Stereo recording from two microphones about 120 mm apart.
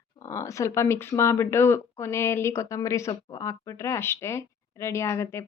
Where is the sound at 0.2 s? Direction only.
25° left (ahead or behind).